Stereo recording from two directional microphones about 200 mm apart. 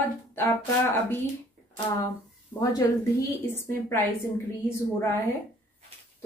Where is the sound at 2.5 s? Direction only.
20° left (ahead or behind).